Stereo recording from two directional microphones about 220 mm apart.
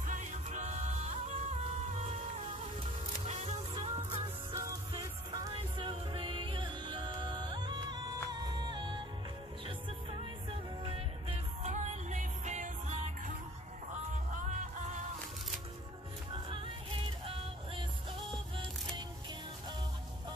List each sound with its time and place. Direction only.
0.0 s music: 35° right (ahead or behind)
10.8 s music: 25° right (ahead or behind)
14.1 s music: 35° right (ahead or behind)